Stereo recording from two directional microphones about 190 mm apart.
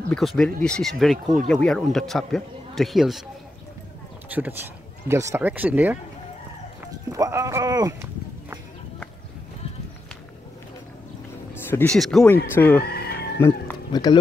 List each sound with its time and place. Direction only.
0.1 s a man's voice: centre (ahead or behind)
4.3 s speech: 10° right (ahead or behind)
7.1 s speech: 15° right (ahead or behind)
11.7 s a man's voice: 5° left (ahead or behind)